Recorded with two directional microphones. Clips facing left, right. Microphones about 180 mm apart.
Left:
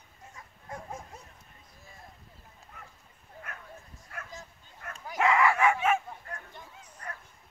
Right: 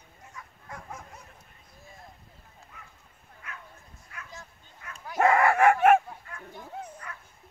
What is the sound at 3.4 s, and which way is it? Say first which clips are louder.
Bow-wow: right 1 dB; 50° left (ahead or behind).